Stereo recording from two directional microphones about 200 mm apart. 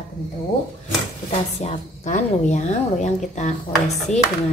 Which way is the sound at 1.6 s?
35° left (ahead or behind).